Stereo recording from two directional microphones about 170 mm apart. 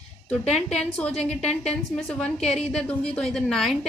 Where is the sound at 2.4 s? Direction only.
40° left (ahead or behind).